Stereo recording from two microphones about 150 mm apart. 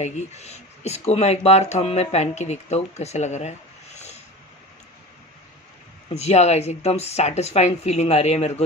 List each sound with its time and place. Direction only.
0.0 s speech: 50° left (ahead or behind)
6.1 s speech: 45° left (ahead or behind)